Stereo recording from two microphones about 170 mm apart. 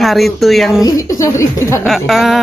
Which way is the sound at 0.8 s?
20° left (ahead or behind).